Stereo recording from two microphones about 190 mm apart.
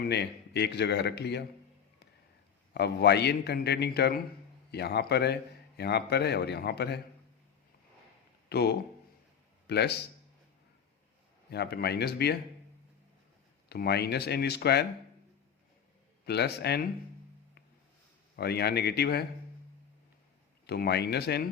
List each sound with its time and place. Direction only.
0.0 s a man's voice: 60° left (ahead or behind)
2.7 s a man's voice: 60° left (ahead or behind)
8.4 s a man's voice: 60° left (ahead or behind)
11.5 s a man's voice: 60° left (ahead or behind)
13.7 s a man's voice: 60° left (ahead or behind)
16.2 s a man's voice: 60° left (ahead or behind)
18.3 s a man's voice: 55° left (ahead or behind)
20.7 s a man's voice: 60° left (ahead or behind)